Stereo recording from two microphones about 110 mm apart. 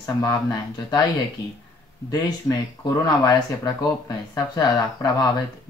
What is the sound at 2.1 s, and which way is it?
Speech, 35° left (ahead or behind).